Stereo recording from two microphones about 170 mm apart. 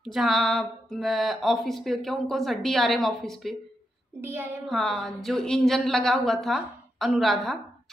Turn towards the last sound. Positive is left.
turn(degrees=0)  # may be behind; listen again after turning